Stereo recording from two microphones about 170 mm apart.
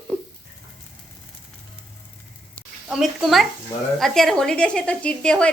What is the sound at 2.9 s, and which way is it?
Speech, centre (ahead or behind).